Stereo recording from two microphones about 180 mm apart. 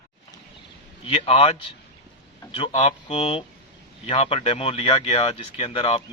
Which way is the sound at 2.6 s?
35° left (ahead or behind).